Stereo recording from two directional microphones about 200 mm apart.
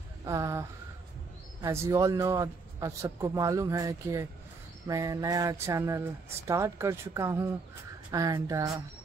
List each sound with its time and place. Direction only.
0.2 s a man's voice: 15° right (ahead or behind)